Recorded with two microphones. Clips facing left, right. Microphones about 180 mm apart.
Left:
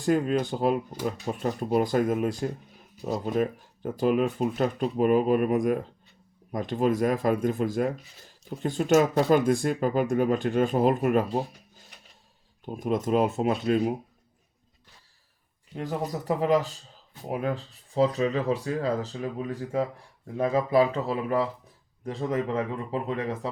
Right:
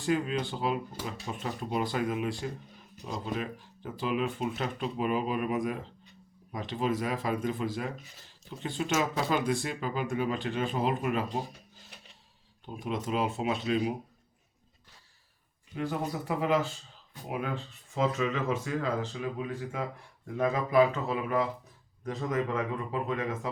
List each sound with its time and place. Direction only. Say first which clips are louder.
0.0 s speech: left 5 dB; 45° left (ahead or behind)
12.6 s speech: left 7 dB; 45° left (ahead or behind)
15.7 s speech: left 2 dB; 40° left (ahead or behind)